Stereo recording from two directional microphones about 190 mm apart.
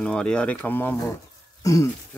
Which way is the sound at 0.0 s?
5° left (ahead or behind).